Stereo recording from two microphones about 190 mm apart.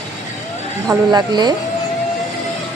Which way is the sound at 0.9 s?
20° right (ahead or behind).